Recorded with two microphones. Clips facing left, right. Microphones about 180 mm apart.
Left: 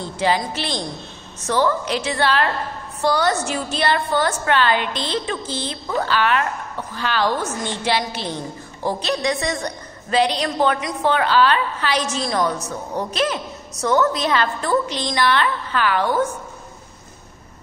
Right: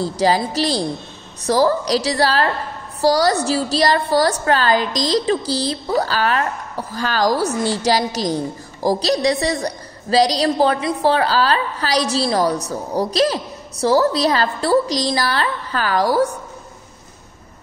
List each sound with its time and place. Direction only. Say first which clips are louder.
0.0 s a woman's voice: right 4 dB; 35° right (ahead or behind)